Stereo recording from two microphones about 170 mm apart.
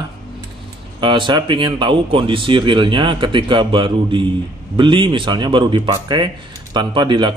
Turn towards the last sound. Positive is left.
turn(degrees=-25)  # may be behind; listen again after turning